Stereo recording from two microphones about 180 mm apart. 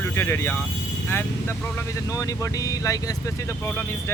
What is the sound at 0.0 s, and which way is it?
Speech, 15° left (ahead or behind).